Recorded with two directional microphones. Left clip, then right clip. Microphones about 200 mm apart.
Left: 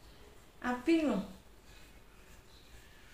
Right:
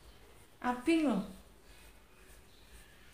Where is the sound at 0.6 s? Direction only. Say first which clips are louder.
Even; 35° right (ahead or behind).